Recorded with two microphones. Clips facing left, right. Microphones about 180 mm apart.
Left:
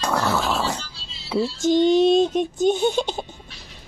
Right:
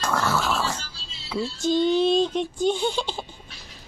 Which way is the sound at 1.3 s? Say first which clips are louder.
Left 5 dB; 10° left (ahead or behind).